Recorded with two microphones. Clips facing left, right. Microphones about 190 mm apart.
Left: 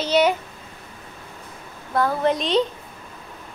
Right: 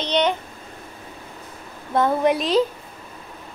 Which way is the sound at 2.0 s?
20° right (ahead or behind).